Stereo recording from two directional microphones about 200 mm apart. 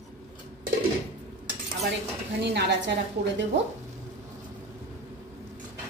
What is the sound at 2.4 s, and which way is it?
Speech, 60° right (ahead or behind).